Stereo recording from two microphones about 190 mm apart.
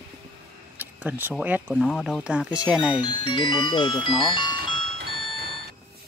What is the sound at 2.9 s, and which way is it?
Speech, 25° left (ahead or behind).